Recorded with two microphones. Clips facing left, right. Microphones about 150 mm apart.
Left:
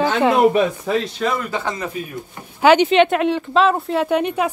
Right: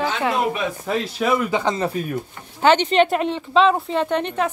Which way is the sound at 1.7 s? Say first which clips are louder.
Right 4 dB; 30° right (ahead or behind).